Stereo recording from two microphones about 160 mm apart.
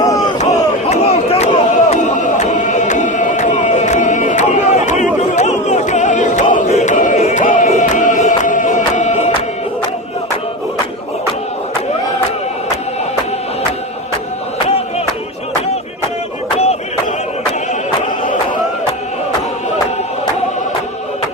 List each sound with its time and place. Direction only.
0.0 s crowd: 20° left (ahead or behind)
0.3 s crowd: 45° left (ahead or behind)